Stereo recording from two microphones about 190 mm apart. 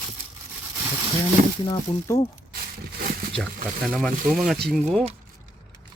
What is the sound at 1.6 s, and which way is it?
Speech, 20° left (ahead or behind).